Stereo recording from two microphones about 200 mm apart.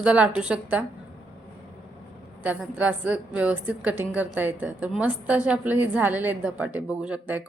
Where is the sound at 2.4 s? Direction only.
5° right (ahead or behind).